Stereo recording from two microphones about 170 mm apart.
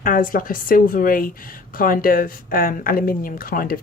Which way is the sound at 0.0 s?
55° left (ahead or behind).